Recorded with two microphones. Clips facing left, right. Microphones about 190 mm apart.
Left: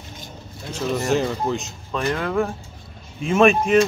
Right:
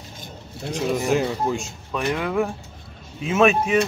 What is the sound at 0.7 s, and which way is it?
Speech, 10° right (ahead or behind).